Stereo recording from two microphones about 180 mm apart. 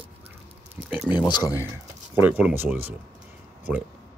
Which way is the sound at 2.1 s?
10° right (ahead or behind).